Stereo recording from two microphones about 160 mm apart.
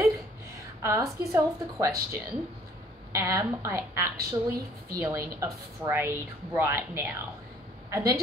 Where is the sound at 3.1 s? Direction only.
20° right (ahead or behind).